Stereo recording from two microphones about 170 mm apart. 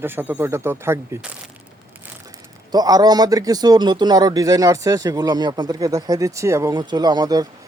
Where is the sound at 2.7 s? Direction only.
20° right (ahead or behind).